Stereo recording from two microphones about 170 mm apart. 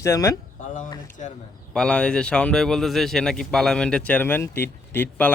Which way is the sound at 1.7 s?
5° left (ahead or behind).